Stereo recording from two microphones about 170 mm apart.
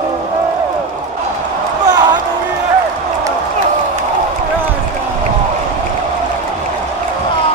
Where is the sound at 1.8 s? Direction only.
25° right (ahead or behind).